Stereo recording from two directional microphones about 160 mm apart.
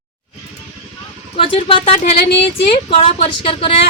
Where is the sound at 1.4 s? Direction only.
35° left (ahead or behind).